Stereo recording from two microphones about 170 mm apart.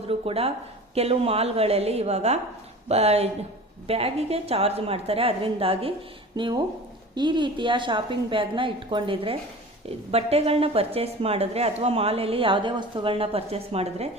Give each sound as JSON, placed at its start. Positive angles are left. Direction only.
{"t": 0.1, "sound": "a woman's voice", "side_deg": -35}